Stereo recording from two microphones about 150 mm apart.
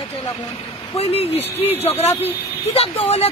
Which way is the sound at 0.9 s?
40° left (ahead or behind).